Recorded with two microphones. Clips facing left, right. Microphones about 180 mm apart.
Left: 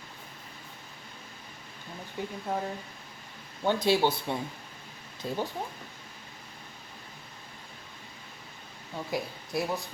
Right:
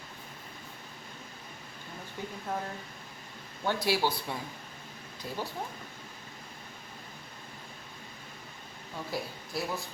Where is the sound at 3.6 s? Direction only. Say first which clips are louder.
Left 4 dB; 20° left (ahead or behind).